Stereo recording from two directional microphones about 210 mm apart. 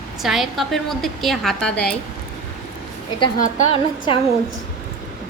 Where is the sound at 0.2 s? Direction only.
Centre (ahead or behind).